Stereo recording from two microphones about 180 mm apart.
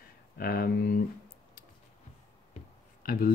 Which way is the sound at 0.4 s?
55° left (ahead or behind).